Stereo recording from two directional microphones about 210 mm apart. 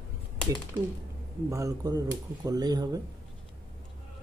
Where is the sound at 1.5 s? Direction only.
15° right (ahead or behind).